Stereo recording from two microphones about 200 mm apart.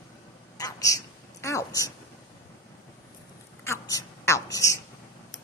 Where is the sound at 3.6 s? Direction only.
15° left (ahead or behind).